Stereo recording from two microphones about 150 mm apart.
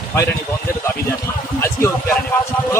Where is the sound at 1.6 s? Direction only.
15° left (ahead or behind).